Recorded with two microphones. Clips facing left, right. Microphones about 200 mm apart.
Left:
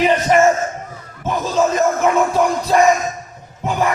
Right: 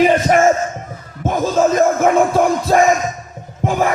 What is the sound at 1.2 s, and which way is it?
Music, 50° right (ahead or behind).